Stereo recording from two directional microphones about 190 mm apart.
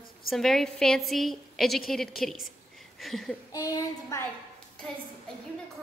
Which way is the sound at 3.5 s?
20° left (ahead or behind).